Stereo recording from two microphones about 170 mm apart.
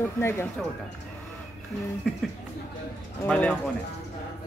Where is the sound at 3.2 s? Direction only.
5° left (ahead or behind).